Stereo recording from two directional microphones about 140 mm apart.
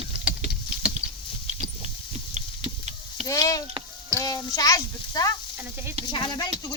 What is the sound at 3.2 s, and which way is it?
Speech, 25° left (ahead or behind).